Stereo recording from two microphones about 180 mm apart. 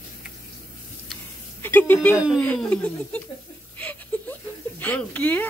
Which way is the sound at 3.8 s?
10° left (ahead or behind).